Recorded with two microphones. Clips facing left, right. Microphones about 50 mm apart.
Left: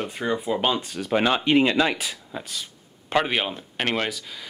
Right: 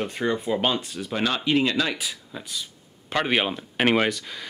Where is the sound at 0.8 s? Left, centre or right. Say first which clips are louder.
Left 4 dB; left.